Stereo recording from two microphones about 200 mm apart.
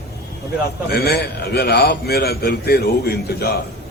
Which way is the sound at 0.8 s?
50° left (ahead or behind).